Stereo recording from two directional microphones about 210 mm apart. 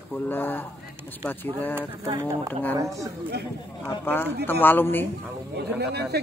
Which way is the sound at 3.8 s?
10° left (ahead or behind).